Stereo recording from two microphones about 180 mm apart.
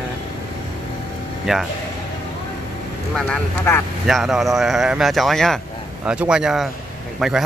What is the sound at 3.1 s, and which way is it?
Speech, 10° left (ahead or behind).